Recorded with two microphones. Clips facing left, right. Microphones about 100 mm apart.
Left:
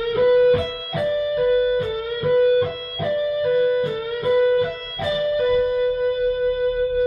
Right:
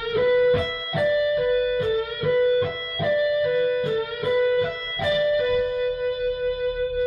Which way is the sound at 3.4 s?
35° left (ahead or behind).